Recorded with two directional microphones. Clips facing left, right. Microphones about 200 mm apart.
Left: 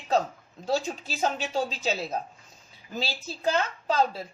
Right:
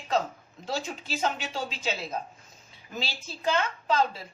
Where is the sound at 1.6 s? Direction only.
35° left (ahead or behind).